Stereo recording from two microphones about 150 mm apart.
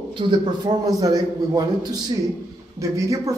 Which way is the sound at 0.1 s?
30° right (ahead or behind).